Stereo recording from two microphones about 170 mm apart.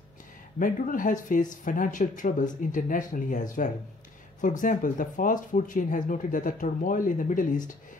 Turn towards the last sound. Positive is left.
turn(degrees=50)  # may be behind; listen again after turning